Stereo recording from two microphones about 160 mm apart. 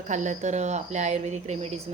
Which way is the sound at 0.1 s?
50° right (ahead or behind).